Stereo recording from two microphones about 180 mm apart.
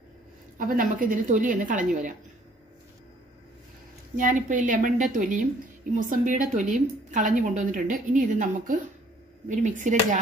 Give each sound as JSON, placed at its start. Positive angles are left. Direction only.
{"t": 0.6, "sound": "a woman's voice", "side_deg": -50}
{"t": 4.2, "sound": "a woman's voice", "side_deg": -45}